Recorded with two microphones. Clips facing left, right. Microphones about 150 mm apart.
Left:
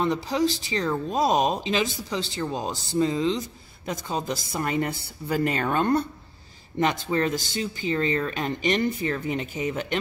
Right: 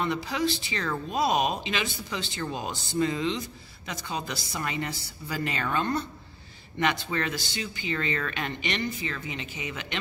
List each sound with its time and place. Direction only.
0.0 s a man's voice: 40° left (ahead or behind)
6.8 s a man's voice: 35° left (ahead or behind)